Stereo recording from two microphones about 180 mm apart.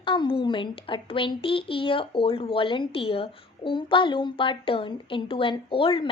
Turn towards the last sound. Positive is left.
turn(degrees=30)  # may be behind; listen again after turning